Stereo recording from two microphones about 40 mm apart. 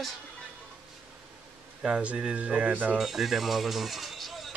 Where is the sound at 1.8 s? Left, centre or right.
Right.